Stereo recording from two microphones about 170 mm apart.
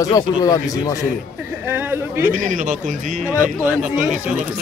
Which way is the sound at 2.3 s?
50° right (ahead or behind).